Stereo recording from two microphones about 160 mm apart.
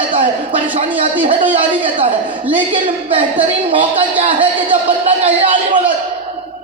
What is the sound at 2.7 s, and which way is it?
A man's voice, 35° right (ahead or behind).